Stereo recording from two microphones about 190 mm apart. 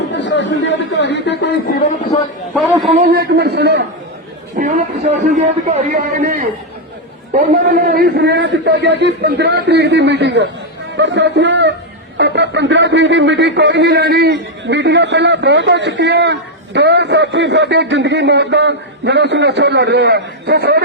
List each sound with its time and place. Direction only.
0.2 s chatter: 75° left (ahead or behind)
0.9 s speech: 65° left (ahead or behind)
2.5 s a man's voice: centre (ahead or behind)
3.1 s a man's voice: 60° right (ahead or behind)
4.5 s a man's voice: 45° right (ahead or behind)
7.7 s a man's voice: 55° right (ahead or behind)